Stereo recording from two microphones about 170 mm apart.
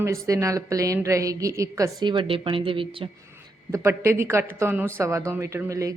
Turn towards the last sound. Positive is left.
turn(degrees=-20)  # may be behind; listen again after turning